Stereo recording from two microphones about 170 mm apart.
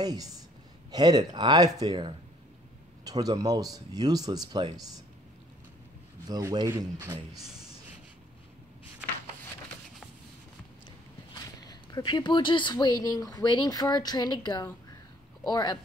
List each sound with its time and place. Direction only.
0.0 s a woman's voice: 25° right (ahead or behind)
6.2 s speech: 25° right (ahead or behind)
11.3 s speech: 25° left (ahead or behind)